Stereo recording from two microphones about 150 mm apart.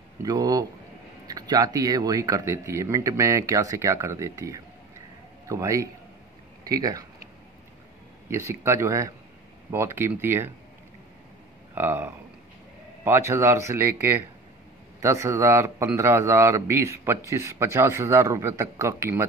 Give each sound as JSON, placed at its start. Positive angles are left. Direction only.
{"t": 0.2, "sound": "a man's voice", "side_deg": -25}
{"t": 8.3, "sound": "a man's voice", "side_deg": -20}
{"t": 11.7, "sound": "a man's voice", "side_deg": -15}